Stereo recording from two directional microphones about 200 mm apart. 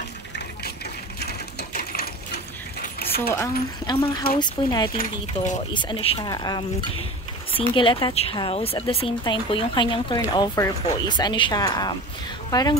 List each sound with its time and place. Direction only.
1.2 s coin: 50° left (ahead or behind)
3.8 s a woman's voice: 20° left (ahead or behind)
4.9 s speech: 40° left (ahead or behind)
5.7 s a woman's voice: 25° left (ahead or behind)